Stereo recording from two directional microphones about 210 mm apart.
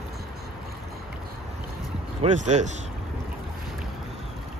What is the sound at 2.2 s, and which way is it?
Speech, 35° right (ahead or behind).